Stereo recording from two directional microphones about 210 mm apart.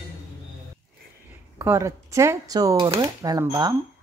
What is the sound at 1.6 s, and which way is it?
Speech, 15° right (ahead or behind).